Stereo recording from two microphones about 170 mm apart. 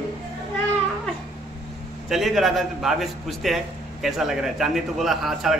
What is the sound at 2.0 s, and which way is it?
A man's voice, centre (ahead or behind).